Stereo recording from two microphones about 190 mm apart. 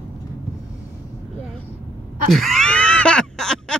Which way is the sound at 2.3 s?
Centre (ahead or behind).